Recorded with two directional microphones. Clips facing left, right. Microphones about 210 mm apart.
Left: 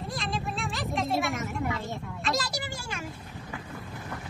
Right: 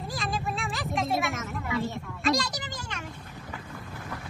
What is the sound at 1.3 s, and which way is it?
Speech, 15° left (ahead or behind).